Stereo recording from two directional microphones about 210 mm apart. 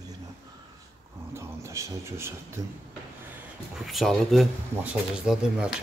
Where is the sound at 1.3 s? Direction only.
15° right (ahead or behind).